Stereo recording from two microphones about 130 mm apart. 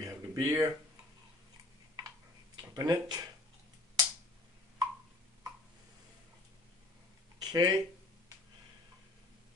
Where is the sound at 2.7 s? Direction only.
30° right (ahead or behind).